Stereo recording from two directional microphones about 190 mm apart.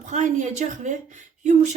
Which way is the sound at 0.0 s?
40° right (ahead or behind).